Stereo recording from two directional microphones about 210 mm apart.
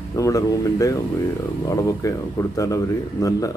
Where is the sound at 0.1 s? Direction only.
15° left (ahead or behind).